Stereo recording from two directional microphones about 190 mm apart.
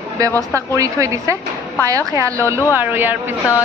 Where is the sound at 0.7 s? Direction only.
15° right (ahead or behind).